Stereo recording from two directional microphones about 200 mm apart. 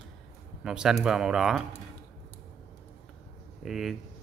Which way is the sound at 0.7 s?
5° right (ahead or behind).